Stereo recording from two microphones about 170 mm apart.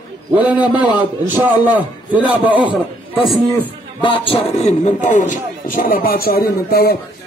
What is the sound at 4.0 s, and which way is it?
Music, 30° left (ahead or behind).